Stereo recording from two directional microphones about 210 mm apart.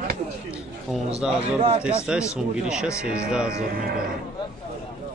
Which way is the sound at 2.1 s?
5° right (ahead or behind).